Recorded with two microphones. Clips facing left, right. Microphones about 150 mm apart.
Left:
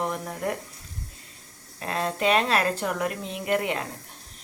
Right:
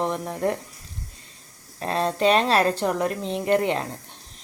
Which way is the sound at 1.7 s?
30° right (ahead or behind).